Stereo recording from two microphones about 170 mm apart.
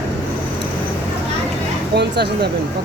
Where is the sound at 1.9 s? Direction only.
75° right (ahead or behind).